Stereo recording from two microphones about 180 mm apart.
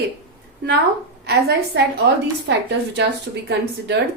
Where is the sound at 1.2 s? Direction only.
65° right (ahead or behind).